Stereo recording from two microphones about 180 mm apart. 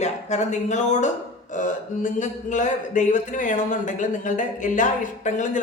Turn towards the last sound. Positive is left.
turn(degrees=45)  # may be behind; listen again after turning